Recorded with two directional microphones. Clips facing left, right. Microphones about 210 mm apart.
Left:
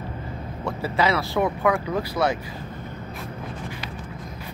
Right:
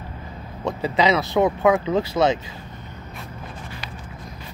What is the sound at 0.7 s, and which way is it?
Speech, 20° right (ahead or behind).